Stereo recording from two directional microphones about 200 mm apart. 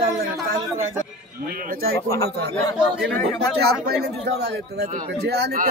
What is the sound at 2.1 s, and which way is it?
Speech, 15° left (ahead or behind).